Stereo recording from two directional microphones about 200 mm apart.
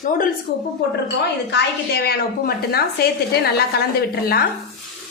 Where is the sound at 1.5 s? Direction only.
55° left (ahead or behind).